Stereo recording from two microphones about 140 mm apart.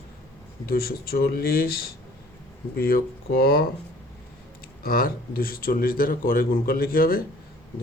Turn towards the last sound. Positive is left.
turn(degrees=90)